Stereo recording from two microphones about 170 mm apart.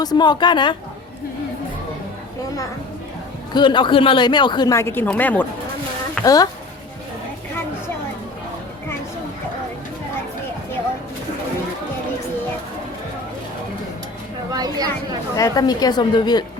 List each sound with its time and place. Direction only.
0.0 s speech: 25° left (ahead or behind)
3.5 s speech: 25° left (ahead or behind); by 5.5 s 10° left (ahead or behind)
6.2 s speech: 20° left (ahead or behind)
14.5 s a sound: 20° right (ahead or behind)
15.4 s speech: 20° left (ahead or behind)